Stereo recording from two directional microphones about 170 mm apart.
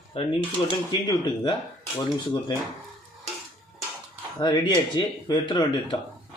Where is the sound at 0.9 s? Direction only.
25° left (ahead or behind).